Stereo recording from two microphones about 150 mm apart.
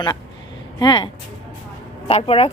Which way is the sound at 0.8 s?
30° left (ahead or behind).